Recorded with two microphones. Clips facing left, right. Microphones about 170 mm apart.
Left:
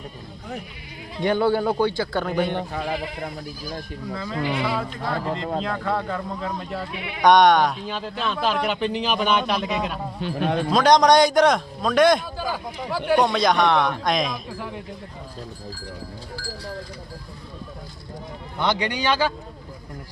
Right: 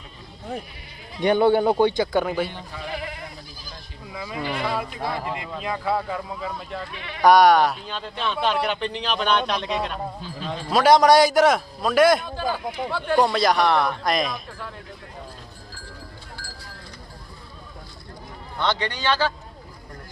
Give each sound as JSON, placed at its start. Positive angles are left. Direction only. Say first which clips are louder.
{"t": 0.5, "sound": "speech", "louder": "right 2 dB", "side_deg": -35}
{"t": 1.2, "sound": "speech", "louder": "right 3 dB", "side_deg": -20}
{"t": 2.2, "sound": "a man's voice", "louder": "left 2 dB", "side_deg": -5}
{"t": 2.5, "sound": "speech", "louder": "left 10 dB", "side_deg": 60}
{"t": 4.1, "sound": "speech", "louder": "left 3 dB", "side_deg": -10}
{"t": 4.4, "sound": "a man's voice", "louder": "left 1 dB", "side_deg": 5}
{"t": 4.8, "sound": "speech", "louder": "left 1 dB", "side_deg": -10}
{"t": 6.9, "sound": "speech", "louder": "left 4 dB", "side_deg": 15}
{"t": 7.2, "sound": "a man's voice", "louder": "right 1 dB", "side_deg": -5}
{"t": 10.2, "sound": "speech", "louder": "left 8 dB", "side_deg": 65}
{"t": 10.7, "sound": "a man's voice", "louder": "right 1 dB", "side_deg": -5}
{"t": 12.4, "sound": "speech", "louder": "right 2 dB", "side_deg": 10}
{"t": 13.1, "sound": "a man's voice", "louder": "even", "side_deg": 0}
{"t": 18.6, "sound": "speech", "louder": "left 1 dB", "side_deg": 10}